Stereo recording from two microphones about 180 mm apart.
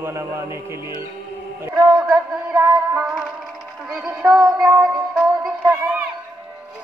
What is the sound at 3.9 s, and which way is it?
Music, 5° right (ahead or behind).